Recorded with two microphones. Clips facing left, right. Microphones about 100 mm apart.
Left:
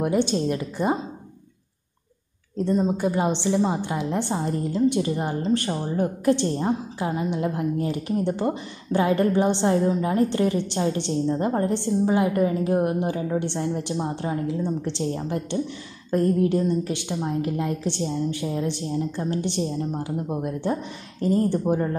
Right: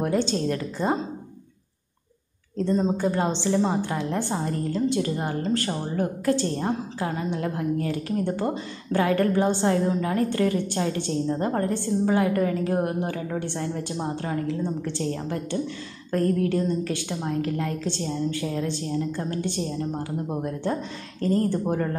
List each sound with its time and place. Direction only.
0.0 s a woman's voice: 15° left (ahead or behind)
2.5 s a woman's voice: 10° left (ahead or behind)
21.2 s a woman's voice: 20° left (ahead or behind)